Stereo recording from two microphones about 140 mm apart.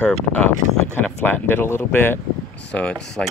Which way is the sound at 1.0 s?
10° left (ahead or behind).